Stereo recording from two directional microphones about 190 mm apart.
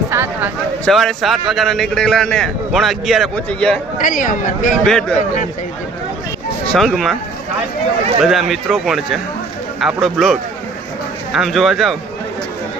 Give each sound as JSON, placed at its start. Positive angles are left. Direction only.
{"t": 0.1, "sound": "a sound", "side_deg": -10}
{"t": 0.9, "sound": "a man's voice", "side_deg": 0}
{"t": 3.9, "sound": "speech", "side_deg": 45}
{"t": 4.9, "sound": "a man's voice", "side_deg": 5}
{"t": 6.7, "sound": "a man's voice", "side_deg": 0}
{"t": 8.2, "sound": "a man's voice", "side_deg": 0}